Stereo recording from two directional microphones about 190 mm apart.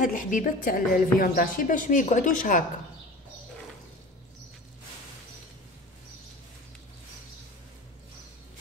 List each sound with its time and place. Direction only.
0.0 s a woman's voice: 45° left (ahead or behind)